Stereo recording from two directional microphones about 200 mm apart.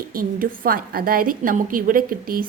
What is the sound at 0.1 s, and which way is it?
A woman's voice, 45° right (ahead or behind).